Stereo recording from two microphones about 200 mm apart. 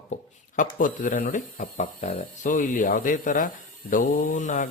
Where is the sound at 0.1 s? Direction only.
40° left (ahead or behind).